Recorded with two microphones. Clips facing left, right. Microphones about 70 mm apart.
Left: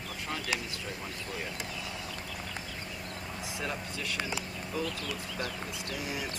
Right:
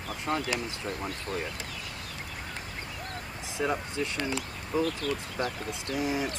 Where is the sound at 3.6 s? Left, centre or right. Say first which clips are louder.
Right 9 dB; right.